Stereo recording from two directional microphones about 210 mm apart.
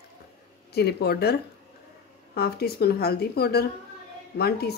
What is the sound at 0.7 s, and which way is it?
A woman's voice, 50° left (ahead or behind).